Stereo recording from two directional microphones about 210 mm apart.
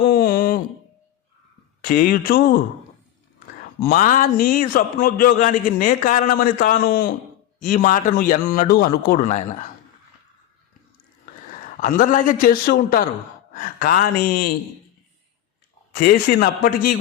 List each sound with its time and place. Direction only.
0.0 s a sound: 45° left (ahead or behind)
1.8 s speech: 40° left (ahead or behind)
3.8 s speech: 40° left (ahead or behind)
11.8 s speech: 40° left (ahead or behind)
16.0 s speech: 45° left (ahead or behind)